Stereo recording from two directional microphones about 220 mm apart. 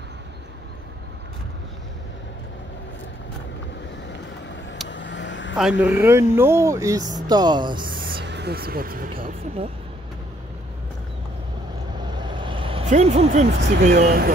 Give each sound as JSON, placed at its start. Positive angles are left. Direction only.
{"t": 4.8, "sound": "vehicle", "side_deg": 55}
{"t": 5.6, "sound": "speech", "side_deg": 0}
{"t": 8.0, "sound": "a sound", "side_deg": -50}
{"t": 12.0, "sound": "vehicle", "side_deg": -20}
{"t": 13.6, "sound": "speech", "side_deg": -55}